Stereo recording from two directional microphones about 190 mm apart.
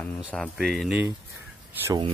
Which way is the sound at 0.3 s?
Centre (ahead or behind).